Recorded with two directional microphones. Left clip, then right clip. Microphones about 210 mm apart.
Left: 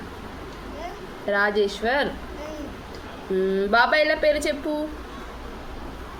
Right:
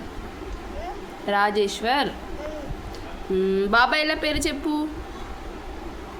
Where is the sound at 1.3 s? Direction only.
25° right (ahead or behind).